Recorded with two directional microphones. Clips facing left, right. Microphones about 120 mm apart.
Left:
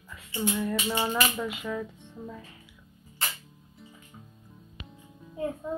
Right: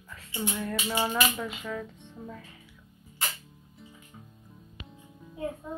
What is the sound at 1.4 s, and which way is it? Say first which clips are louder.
Speech: left 2 dB; 5° left (ahead or behind).